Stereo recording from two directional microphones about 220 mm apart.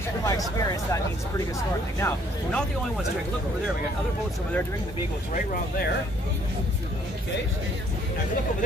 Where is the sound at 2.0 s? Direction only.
10° left (ahead or behind).